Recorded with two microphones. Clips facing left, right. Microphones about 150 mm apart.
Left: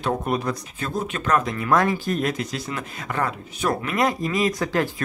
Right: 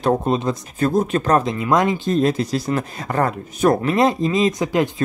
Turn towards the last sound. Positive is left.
turn(degrees=-20)  # may be behind; listen again after turning